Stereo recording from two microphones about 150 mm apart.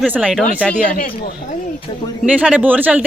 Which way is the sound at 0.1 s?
10° right (ahead or behind).